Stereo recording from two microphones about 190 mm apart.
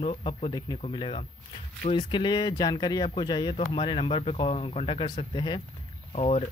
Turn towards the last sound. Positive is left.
turn(degrees=35)  # may be behind; listen again after turning